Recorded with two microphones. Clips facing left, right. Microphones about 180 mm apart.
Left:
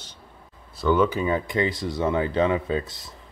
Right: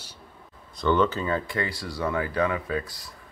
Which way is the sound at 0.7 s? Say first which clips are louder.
Left 2 dB; 5° left (ahead or behind).